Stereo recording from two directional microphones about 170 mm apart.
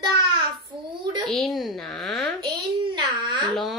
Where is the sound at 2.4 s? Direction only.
25° right (ahead or behind).